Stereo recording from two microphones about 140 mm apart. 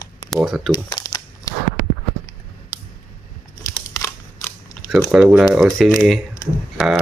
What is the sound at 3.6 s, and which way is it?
Scissors, 20° left (ahead or behind).